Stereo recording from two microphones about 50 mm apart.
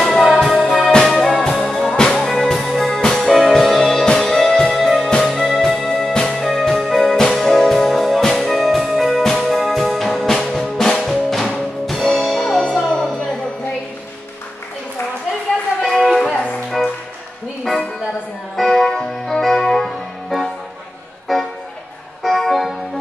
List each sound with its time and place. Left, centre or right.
0.0 s music: centre
0.9 s music: centre
1.9 s music: centre
2.1 s music: centre
15.8 s music: centre
18.6 s music: centre